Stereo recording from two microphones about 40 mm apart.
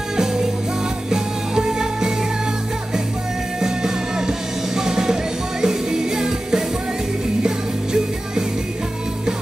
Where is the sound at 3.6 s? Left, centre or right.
Centre.